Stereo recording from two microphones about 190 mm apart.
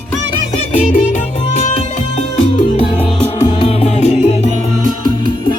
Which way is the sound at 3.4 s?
35° left (ahead or behind).